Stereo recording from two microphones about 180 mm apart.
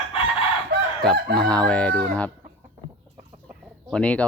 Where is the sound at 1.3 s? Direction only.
5° left (ahead or behind).